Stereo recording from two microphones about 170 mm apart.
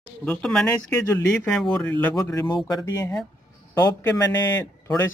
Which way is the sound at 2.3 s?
25° left (ahead or behind).